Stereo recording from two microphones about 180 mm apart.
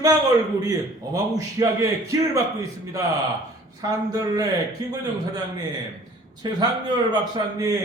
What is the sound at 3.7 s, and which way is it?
Speech, 20° right (ahead or behind).